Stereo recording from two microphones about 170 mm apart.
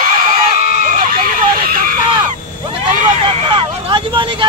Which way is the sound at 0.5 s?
50° right (ahead or behind).